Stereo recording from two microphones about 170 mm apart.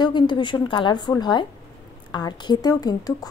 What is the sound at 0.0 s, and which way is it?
A woman's voice, 25° left (ahead or behind).